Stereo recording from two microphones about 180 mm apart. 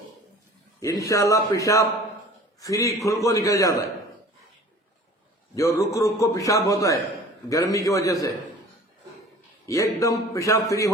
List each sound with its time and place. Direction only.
0.8 s a man's voice: 20° left (ahead or behind)
5.5 s a man's voice: 15° left (ahead or behind)
9.6 s a man's voice: 15° left (ahead or behind)